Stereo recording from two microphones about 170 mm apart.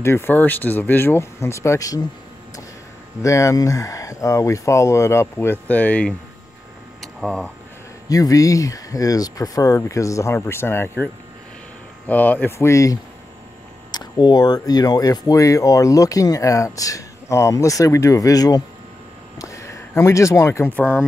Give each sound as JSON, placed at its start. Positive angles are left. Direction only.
{"t": 0.0, "sound": "speech", "side_deg": 15}
{"t": 3.2, "sound": "speech", "side_deg": 20}
{"t": 7.0, "sound": "a sound", "side_deg": 0}
{"t": 8.1, "sound": "speech", "side_deg": 20}
{"t": 12.1, "sound": "speech", "side_deg": 10}